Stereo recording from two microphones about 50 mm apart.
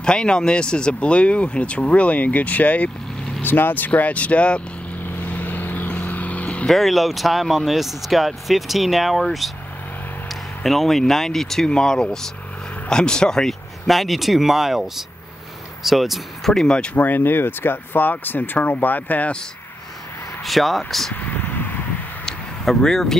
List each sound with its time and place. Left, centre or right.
0.0 s speech: centre
3.4 s speech: left
5.2 s vehicle: left
6.7 s speech: centre
10.6 s speech: centre
16.5 s speech: centre
16.9 s speech: left
20.4 s speech: centre
21.1 s a sound: left
22.7 s speech: centre